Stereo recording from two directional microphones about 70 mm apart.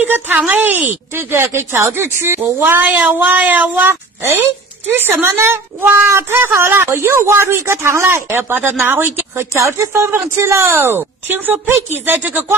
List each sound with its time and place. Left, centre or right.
0.0 s speech: right
9.5 s speech: right
10.7 s speech: right